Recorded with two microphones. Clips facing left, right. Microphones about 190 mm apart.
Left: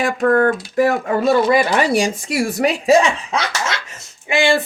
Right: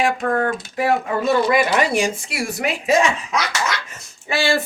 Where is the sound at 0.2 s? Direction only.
60° left (ahead or behind).